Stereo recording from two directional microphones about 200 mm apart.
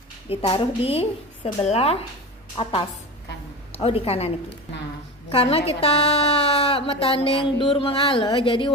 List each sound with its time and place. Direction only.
0.3 s a woman's voice: 30° left (ahead or behind)
5.3 s a woman's voice: 30° left (ahead or behind)